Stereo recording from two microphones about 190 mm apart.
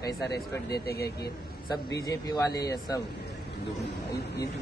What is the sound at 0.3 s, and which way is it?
Speech, 60° left (ahead or behind).